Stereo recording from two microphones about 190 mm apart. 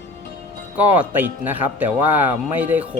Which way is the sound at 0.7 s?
10° right (ahead or behind).